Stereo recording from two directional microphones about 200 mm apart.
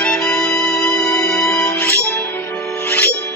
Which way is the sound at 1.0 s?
15° left (ahead or behind).